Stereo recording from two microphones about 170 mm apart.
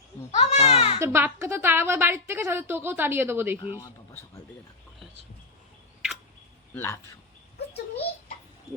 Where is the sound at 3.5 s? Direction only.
30° left (ahead or behind).